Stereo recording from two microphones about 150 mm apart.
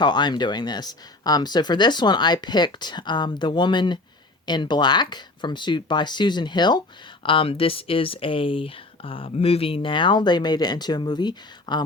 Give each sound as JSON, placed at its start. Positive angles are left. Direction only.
{"t": 0.0, "sound": "speech", "side_deg": 30}